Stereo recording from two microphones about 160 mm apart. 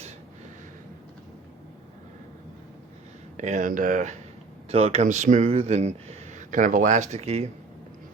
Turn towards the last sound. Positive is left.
turn(degrees=-40)  # may be behind; listen again after turning